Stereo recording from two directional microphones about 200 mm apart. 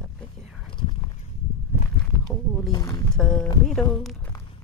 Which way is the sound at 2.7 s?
20° left (ahead or behind).